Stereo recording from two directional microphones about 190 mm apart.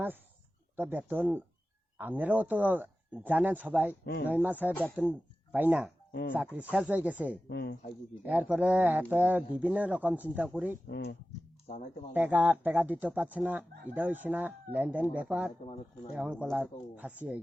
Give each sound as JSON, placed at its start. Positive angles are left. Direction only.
{"t": 0.8, "sound": "speech", "side_deg": -10}
{"t": 4.0, "sound": "speech", "side_deg": 60}
{"t": 4.3, "sound": "speech", "side_deg": -10}
{"t": 7.4, "sound": "speech", "side_deg": 60}
{"t": 8.3, "sound": "speech", "side_deg": -5}
{"t": 10.8, "sound": "speech", "side_deg": 60}
{"t": 11.7, "sound": "speech", "side_deg": 40}
{"t": 12.1, "sound": "speech", "side_deg": -10}